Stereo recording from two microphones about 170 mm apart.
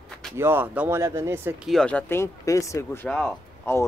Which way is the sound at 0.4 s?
10° right (ahead or behind).